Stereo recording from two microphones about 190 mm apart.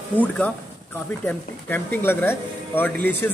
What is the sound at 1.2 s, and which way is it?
Speech, 10° left (ahead or behind).